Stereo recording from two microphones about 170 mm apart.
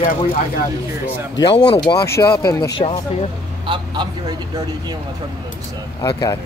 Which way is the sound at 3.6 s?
30° right (ahead or behind).